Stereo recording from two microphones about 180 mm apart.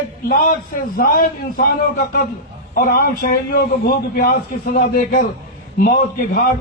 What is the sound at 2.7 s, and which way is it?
A man's voice, 55° left (ahead or behind).